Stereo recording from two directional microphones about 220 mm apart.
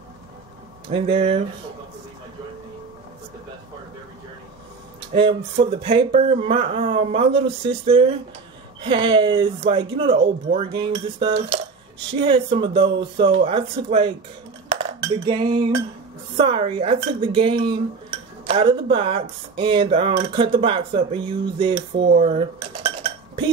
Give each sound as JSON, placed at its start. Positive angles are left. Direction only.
{"t": 0.8, "sound": "speech", "side_deg": -25}
{"t": 5.1, "sound": "speech", "side_deg": -25}
{"t": 14.8, "sound": "dishes", "side_deg": -25}
{"t": 16.3, "sound": "speech", "side_deg": -25}
{"t": 22.2, "sound": "dishes", "side_deg": -30}